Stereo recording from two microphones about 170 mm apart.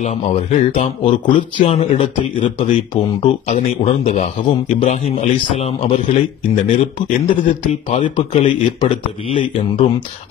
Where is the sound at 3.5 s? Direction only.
45° left (ahead or behind).